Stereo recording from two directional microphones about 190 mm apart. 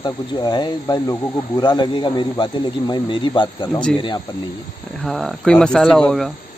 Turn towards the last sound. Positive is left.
turn(degrees=5)  # may be behind; listen again after turning